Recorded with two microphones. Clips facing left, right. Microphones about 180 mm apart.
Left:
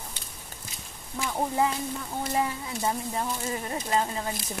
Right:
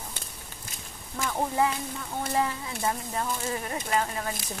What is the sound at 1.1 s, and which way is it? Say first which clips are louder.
Speech: even; 10° left (ahead or behind).